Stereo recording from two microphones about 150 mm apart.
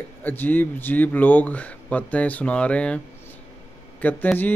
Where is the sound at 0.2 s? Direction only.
10° left (ahead or behind).